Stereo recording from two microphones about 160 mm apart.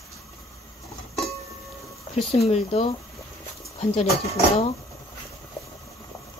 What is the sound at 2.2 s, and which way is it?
Speech, 40° left (ahead or behind).